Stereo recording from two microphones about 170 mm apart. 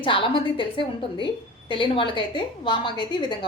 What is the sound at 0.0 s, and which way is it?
A woman's voice, 30° left (ahead or behind).